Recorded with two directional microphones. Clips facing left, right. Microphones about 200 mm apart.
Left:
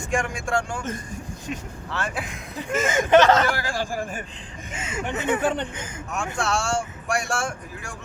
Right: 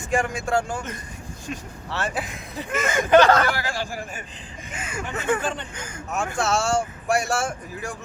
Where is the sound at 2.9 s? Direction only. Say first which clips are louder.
Right 1 dB; 20° left (ahead or behind).